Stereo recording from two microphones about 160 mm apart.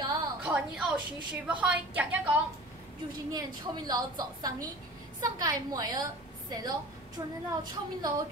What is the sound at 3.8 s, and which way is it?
A woman's voice, 25° right (ahead or behind).